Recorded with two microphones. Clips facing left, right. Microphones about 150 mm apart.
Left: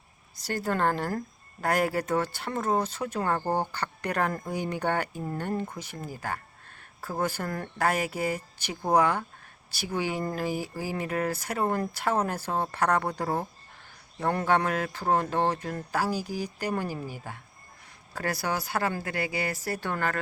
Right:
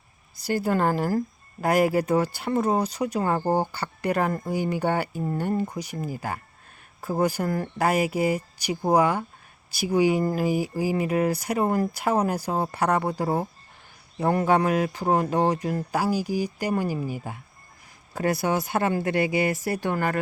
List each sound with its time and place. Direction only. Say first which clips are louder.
0.4 s speech: right 4 dB; 10° right (ahead or behind)